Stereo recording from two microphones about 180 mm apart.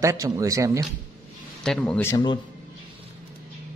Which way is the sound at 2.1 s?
25° left (ahead or behind).